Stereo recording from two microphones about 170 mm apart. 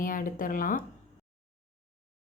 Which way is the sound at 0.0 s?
55° left (ahead or behind).